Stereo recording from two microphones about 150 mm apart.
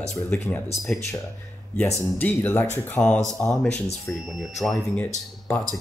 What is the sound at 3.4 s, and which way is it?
Music, 5° left (ahead or behind).